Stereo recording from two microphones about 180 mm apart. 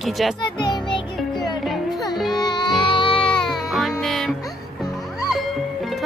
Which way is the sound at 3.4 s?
Centre (ahead or behind).